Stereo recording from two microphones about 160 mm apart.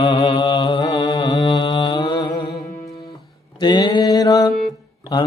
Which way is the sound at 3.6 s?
25° left (ahead or behind).